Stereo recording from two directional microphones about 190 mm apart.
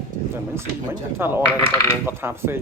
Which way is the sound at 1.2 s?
10° right (ahead or behind).